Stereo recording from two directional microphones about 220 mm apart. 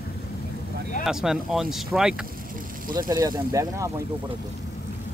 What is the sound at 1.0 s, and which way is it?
Speech, centre (ahead or behind).